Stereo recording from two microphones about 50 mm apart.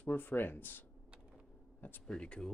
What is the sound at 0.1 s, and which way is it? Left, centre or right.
Speech, left.